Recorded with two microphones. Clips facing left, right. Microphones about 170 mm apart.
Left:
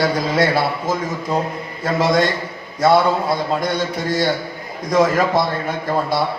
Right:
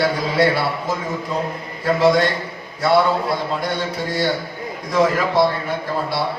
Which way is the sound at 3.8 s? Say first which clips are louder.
Left 2 dB; 40° left (ahead or behind).